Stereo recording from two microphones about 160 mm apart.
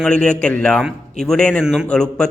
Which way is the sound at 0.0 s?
5° left (ahead or behind).